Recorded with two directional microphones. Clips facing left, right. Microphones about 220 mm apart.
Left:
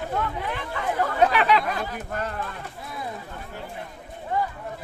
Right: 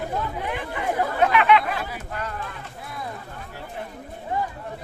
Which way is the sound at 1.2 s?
35° left (ahead or behind).